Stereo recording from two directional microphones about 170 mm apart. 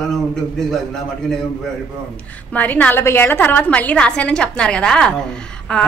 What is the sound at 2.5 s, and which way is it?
A woman's voice, 10° left (ahead or behind).